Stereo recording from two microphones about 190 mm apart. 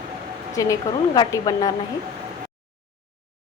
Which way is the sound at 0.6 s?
15° left (ahead or behind).